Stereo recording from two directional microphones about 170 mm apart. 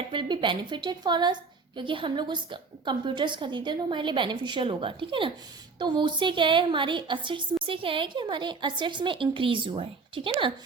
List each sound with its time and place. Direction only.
0.1 s a woman's voice: 30° right (ahead or behind)